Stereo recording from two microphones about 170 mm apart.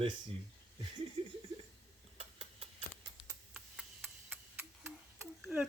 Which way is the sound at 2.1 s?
35° right (ahead or behind).